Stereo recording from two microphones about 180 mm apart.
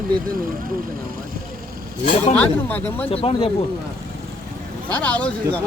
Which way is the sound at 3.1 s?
30° left (ahead or behind).